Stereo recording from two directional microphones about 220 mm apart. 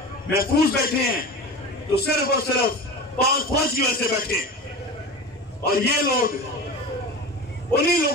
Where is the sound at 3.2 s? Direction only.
40° left (ahead or behind).